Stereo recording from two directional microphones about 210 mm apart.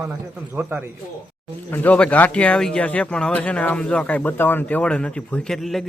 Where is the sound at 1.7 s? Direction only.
10° left (ahead or behind).